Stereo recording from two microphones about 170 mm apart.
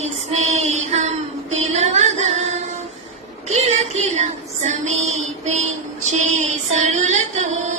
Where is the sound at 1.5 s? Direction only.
40° right (ahead or behind).